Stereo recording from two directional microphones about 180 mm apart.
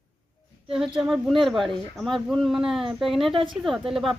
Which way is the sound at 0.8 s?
Centre (ahead or behind).